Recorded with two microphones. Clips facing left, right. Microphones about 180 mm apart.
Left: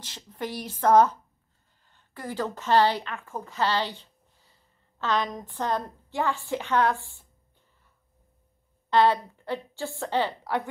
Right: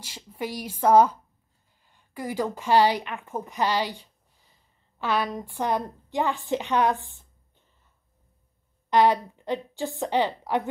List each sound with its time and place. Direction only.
0.0 s a woman's voice: 10° right (ahead or behind)
8.9 s a woman's voice: 15° right (ahead or behind)